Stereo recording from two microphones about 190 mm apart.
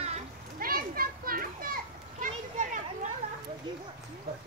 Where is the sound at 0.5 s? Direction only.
50° right (ahead or behind).